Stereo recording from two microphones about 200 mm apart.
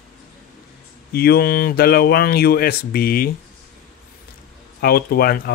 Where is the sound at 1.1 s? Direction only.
50° left (ahead or behind).